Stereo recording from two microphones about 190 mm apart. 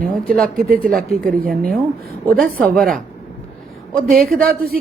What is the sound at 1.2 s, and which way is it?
Speech, 50° right (ahead or behind).